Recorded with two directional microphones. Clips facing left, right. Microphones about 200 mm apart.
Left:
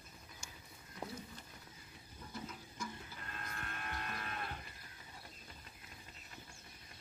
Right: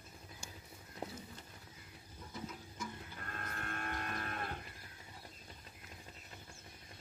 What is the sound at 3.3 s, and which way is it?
Vehicle, 45° right (ahead or behind).